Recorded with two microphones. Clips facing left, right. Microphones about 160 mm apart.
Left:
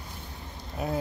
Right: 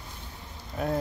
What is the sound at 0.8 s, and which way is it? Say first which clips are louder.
Speech: right 2 dB; centre (ahead or behind).